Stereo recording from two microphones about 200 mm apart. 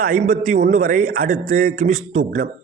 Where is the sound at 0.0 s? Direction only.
40° right (ahead or behind).